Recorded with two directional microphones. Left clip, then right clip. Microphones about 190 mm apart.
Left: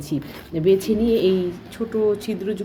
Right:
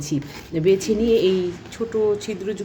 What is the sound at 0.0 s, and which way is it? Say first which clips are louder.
A woman's voice: right 1 dB; centre (ahead or behind).